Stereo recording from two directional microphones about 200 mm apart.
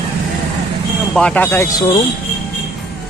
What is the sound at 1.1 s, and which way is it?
Speech, 5° left (ahead or behind).